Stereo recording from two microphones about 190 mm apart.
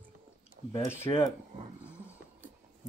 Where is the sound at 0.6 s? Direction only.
40° right (ahead or behind).